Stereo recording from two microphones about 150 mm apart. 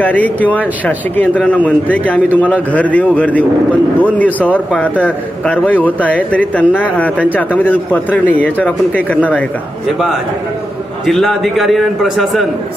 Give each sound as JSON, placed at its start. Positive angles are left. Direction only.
{"t": 0.0, "sound": "a man's voice", "side_deg": 10}
{"t": 11.1, "sound": "a man's voice", "side_deg": 0}